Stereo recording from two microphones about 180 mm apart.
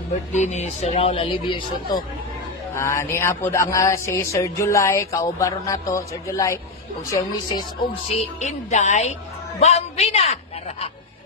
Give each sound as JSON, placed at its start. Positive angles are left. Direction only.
{"t": 0.3, "sound": "a woman's voice", "side_deg": 40}
{"t": 2.7, "sound": "speech", "side_deg": 15}
{"t": 8.1, "sound": "a woman's voice", "side_deg": 40}